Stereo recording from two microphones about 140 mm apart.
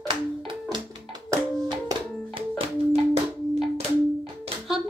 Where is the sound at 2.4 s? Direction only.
45° right (ahead or behind).